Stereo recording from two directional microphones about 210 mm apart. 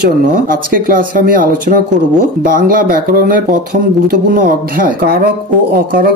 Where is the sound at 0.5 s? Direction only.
40° right (ahead or behind).